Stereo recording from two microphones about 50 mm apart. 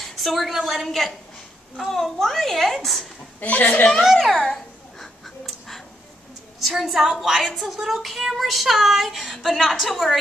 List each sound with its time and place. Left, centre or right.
0.0 s a woman's voice: centre
0.8 s child singing: centre
3.3 s a woman's voice: left
4.0 s child singing: centre
5.0 s a sound: centre
6.6 s child singing: centre